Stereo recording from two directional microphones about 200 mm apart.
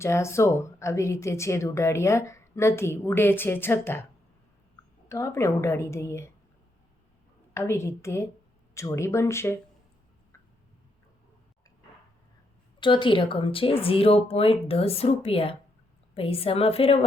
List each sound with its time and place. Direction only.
0.0 s speech: 15° left (ahead or behind)
5.0 s speech: 15° left (ahead or behind)
7.5 s speech: 15° left (ahead or behind)
12.8 s speech: 25° left (ahead or behind)